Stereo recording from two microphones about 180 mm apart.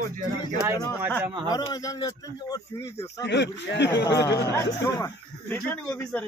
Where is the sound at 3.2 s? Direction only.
75° left (ahead or behind).